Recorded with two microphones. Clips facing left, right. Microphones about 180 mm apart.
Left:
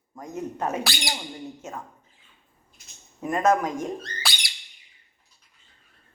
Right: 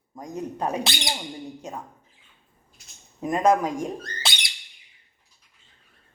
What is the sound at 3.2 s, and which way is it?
Speech, 15° right (ahead or behind).